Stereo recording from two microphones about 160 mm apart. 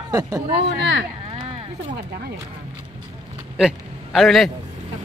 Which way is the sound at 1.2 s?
35° right (ahead or behind).